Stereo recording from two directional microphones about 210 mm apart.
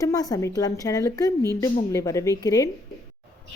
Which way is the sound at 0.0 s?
15° left (ahead or behind).